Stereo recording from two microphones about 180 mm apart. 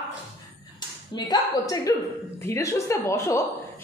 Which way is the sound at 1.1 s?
20° left (ahead or behind).